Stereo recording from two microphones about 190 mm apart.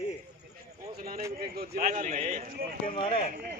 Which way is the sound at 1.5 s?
55° right (ahead or behind).